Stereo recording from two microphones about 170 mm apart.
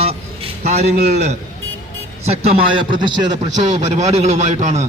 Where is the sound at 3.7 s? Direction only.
45° right (ahead or behind).